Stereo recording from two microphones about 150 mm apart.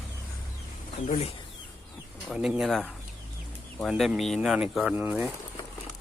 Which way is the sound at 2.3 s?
5° right (ahead or behind).